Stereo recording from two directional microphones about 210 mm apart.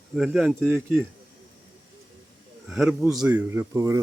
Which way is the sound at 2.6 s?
Centre (ahead or behind).